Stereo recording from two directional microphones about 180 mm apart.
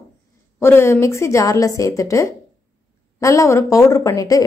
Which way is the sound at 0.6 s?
15° left (ahead or behind).